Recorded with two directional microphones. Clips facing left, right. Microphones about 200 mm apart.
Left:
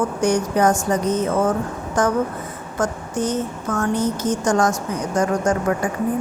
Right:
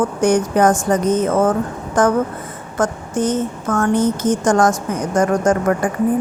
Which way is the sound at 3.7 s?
50° right (ahead or behind).